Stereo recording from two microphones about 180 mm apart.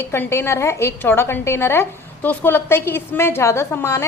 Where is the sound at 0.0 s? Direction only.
15° left (ahead or behind).